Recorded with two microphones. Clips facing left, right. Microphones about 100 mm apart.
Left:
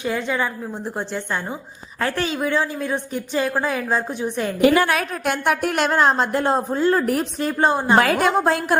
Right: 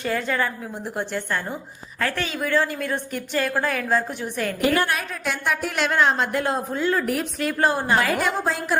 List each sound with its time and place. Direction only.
0.0 s a woman's voice: 15° left (ahead or behind)
2.0 s a woman's voice: 30° left (ahead or behind)
2.5 s a woman's voice: 15° left (ahead or behind)
4.6 s a woman's voice: 90° left
5.3 s a woman's voice: 55° left (ahead or behind)
5.9 s a woman's voice: 35° left (ahead or behind)
7.9 s a woman's voice: 60° left (ahead or behind)